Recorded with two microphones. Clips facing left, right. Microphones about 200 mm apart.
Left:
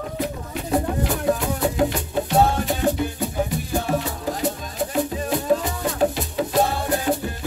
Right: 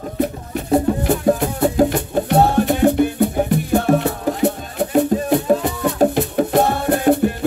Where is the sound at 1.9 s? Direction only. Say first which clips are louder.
Right 5 dB; 60° right (ahead or behind).